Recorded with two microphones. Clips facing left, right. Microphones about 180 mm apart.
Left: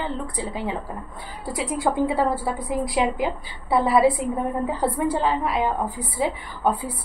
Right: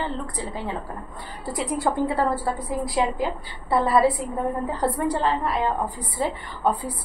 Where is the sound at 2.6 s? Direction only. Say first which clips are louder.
Left 3 dB; 15° left (ahead or behind).